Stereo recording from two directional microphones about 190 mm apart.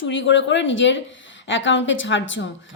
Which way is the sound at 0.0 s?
75° left (ahead or behind).